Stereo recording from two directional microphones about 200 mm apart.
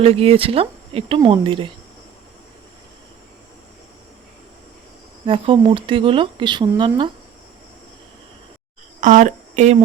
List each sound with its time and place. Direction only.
0.0 s speech: 30° right (ahead or behind)
5.2 s speech: 25° right (ahead or behind)
9.0 s speech: 40° right (ahead or behind)